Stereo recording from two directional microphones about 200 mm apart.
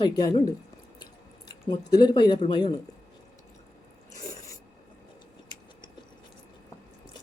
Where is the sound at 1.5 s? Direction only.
20° left (ahead or behind).